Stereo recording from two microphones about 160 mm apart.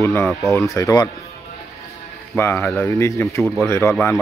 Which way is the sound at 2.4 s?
15° left (ahead or behind).